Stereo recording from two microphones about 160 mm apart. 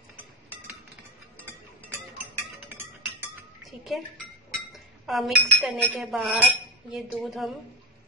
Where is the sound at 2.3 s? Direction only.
15° right (ahead or behind).